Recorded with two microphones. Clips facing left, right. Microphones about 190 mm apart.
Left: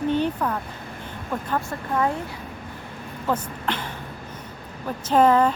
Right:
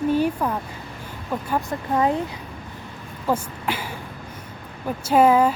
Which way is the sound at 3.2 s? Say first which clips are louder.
Right 2 dB; 10° right (ahead or behind).